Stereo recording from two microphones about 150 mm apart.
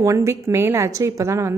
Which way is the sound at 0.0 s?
20° right (ahead or behind).